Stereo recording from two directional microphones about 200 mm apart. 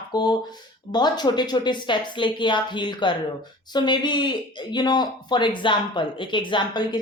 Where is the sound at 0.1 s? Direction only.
20° left (ahead or behind).